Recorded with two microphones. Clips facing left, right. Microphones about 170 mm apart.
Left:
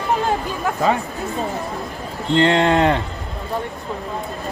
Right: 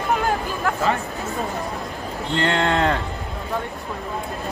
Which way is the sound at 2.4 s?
20° left (ahead or behind).